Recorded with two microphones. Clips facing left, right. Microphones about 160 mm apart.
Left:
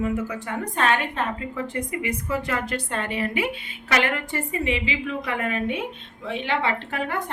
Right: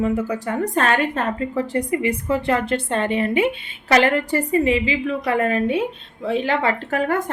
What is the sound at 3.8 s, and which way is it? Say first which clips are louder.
A woman's voice: right 7 dB; 35° right (ahead or behind).